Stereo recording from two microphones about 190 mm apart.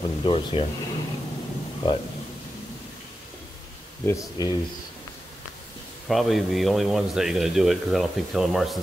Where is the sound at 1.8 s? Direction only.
25° left (ahead or behind).